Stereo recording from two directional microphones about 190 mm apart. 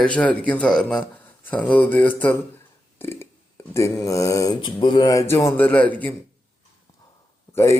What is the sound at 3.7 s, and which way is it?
Mantra, 15° left (ahead or behind).